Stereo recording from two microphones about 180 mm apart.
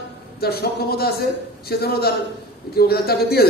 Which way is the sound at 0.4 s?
60° left (ahead or behind).